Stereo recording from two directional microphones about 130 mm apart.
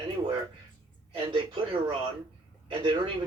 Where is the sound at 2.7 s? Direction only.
40° right (ahead or behind).